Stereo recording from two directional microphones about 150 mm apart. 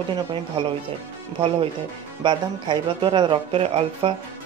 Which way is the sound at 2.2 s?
30° right (ahead or behind).